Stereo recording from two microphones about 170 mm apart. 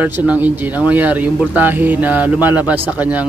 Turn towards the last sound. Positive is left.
turn(degrees=-10)  # may be behind; listen again after turning